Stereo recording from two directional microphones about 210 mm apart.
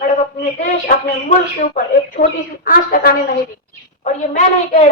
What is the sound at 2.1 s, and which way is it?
A woman's voice, 40° left (ahead or behind).